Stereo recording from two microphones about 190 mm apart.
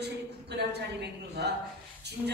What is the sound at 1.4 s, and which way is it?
Speech, 60° right (ahead or behind).